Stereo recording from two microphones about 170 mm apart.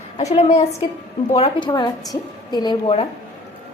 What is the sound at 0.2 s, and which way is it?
Speech, 40° left (ahead or behind).